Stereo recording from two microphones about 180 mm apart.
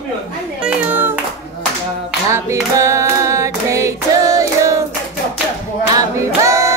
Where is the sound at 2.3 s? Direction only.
15° right (ahead or behind).